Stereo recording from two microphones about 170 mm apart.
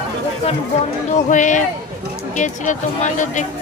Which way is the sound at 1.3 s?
45° left (ahead or behind).